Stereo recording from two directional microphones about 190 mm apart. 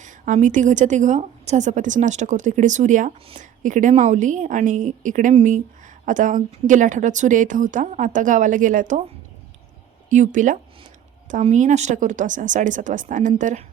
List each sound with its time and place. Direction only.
0.0 s a woman's voice: 40° right (ahead or behind)
10.1 s a woman's voice: 40° right (ahead or behind)